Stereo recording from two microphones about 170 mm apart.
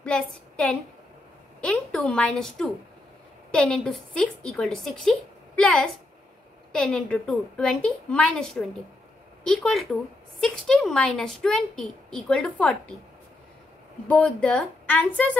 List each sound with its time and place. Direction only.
0.0 s a woman's voice: 5° left (ahead or behind)
14.0 s a woman's voice: 10° left (ahead or behind)